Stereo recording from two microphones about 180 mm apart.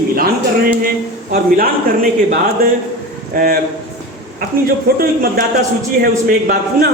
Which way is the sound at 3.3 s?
50° right (ahead or behind).